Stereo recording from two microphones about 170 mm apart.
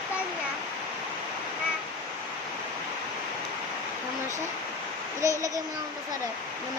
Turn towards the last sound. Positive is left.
turn(degrees=-20)  # may be behind; listen again after turning